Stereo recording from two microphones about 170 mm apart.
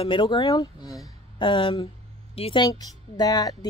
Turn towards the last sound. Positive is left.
turn(degrees=25)  # may be behind; listen again after turning